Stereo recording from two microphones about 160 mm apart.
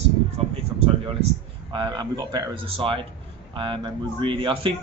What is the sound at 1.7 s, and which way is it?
A man's voice, 25° right (ahead or behind).